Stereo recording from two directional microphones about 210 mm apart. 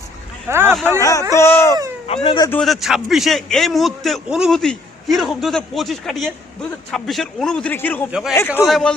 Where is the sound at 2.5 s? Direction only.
Centre (ahead or behind).